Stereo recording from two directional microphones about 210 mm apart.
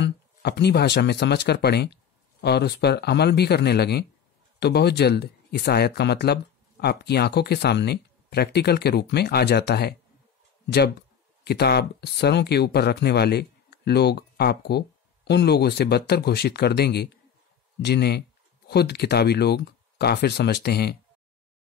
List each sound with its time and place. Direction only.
0.0 s speech: 50° left (ahead or behind)